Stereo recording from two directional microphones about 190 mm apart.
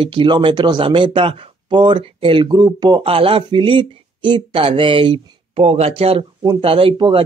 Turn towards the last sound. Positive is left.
turn(degrees=-25)  # may be behind; listen again after turning